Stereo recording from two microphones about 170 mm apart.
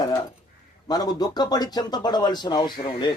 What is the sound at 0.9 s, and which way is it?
Speech, 25° left (ahead or behind).